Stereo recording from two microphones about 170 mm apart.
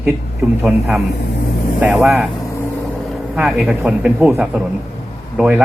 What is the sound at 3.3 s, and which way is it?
Speech, 5° right (ahead or behind).